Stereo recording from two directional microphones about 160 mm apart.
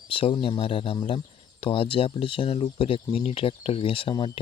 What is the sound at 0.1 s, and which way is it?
Speech, 35° left (ahead or behind).